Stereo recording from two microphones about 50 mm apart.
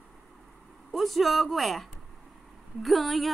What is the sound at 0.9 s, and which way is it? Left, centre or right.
A woman's voice, centre.